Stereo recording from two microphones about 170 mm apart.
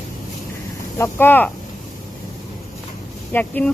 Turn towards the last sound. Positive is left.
turn(degrees=10)  # may be behind; listen again after turning